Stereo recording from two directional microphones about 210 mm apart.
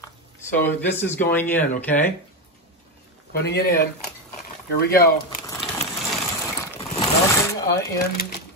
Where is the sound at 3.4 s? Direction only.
50° left (ahead or behind).